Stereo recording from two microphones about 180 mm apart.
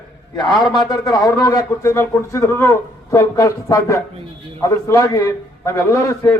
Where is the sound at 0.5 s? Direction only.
25° left (ahead or behind).